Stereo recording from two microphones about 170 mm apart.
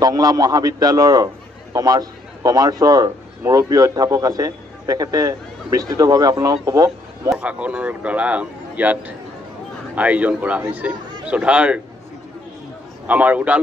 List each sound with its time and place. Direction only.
0.0 s a man's voice: 20° right (ahead or behind)
7.2 s speech: 5° right (ahead or behind)
13.0 s speech: 10° right (ahead or behind)